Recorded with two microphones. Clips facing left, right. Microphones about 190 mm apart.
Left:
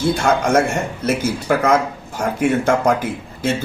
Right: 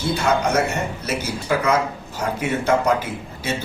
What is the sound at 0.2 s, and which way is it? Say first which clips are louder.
A man's voice: left 1 dB; 50° left (ahead or behind).